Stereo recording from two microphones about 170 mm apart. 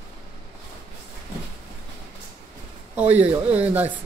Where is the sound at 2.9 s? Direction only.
10° right (ahead or behind).